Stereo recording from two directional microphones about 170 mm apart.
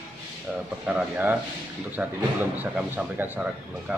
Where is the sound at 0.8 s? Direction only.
10° right (ahead or behind).